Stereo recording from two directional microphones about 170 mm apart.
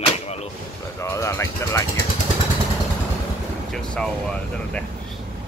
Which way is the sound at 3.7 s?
5° left (ahead or behind).